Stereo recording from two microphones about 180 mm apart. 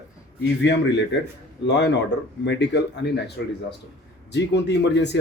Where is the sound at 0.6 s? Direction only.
75° left (ahead or behind).